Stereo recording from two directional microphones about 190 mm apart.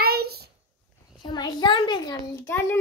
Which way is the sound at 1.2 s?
20° left (ahead or behind).